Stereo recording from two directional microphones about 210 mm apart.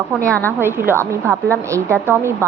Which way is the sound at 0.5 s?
10° right (ahead or behind).